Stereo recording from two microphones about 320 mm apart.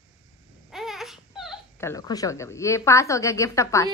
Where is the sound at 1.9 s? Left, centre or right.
Centre.